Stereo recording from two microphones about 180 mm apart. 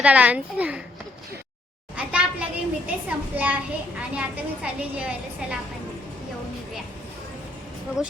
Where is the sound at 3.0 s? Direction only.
10° right (ahead or behind).